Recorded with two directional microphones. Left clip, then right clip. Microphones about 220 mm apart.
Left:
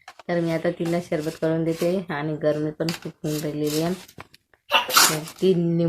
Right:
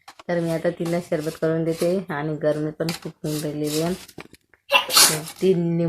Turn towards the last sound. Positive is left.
turn(degrees=0)  # may be behind; listen again after turning